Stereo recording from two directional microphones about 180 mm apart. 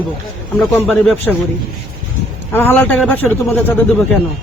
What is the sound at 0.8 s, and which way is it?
Speech, 5° left (ahead or behind).